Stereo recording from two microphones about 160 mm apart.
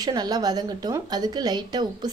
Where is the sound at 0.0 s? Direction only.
25° right (ahead or behind).